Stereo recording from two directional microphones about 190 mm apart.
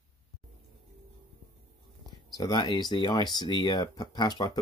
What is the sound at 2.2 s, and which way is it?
Speech, 20° left (ahead or behind).